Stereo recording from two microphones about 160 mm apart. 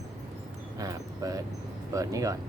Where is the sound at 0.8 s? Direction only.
20° right (ahead or behind).